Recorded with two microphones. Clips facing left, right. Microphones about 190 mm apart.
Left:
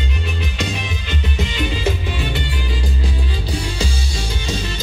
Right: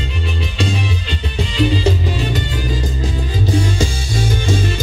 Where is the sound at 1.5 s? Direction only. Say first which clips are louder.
Right 8 dB; 35° right (ahead or behind).